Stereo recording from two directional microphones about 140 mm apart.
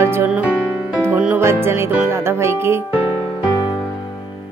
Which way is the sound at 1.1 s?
10° right (ahead or behind).